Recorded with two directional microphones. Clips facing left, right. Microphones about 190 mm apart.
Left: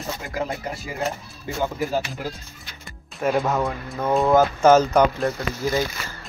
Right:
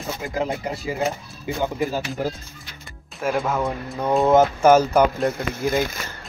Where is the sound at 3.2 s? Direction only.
Centre (ahead or behind).